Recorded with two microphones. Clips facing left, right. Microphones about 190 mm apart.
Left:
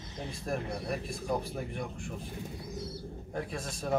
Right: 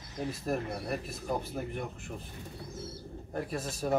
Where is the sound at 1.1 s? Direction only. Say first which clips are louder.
Left 1 dB; centre (ahead or behind).